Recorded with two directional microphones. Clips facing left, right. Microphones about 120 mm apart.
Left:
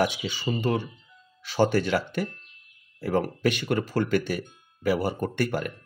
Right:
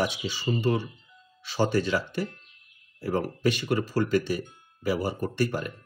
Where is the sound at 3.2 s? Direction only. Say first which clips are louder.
Even; 55° left (ahead or behind).